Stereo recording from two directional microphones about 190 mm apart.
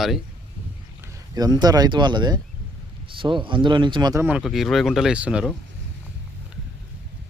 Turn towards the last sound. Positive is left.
turn(degrees=-5)  # may be behind; listen again after turning